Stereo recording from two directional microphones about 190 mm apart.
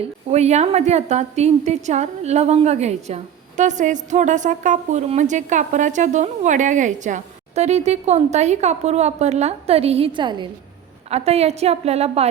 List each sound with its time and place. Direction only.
0.0 s a woman's voice: 35° right (ahead or behind)